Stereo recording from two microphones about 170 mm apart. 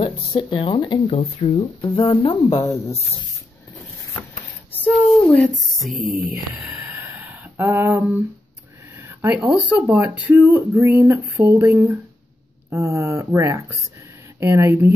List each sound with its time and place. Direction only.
0.0 s speech: 30° left (ahead or behind)
2.6 s speech: 15° left (ahead or behind)
4.1 s a sound: 20° left (ahead or behind)
5.0 s speech: 5° left (ahead or behind); by 8.2 s 10° right (ahead or behind)
9.2 s speech: 10° right (ahead or behind)